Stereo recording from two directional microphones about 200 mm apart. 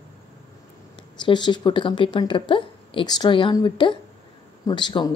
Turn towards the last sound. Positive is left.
turn(degrees=20)  # may be behind; listen again after turning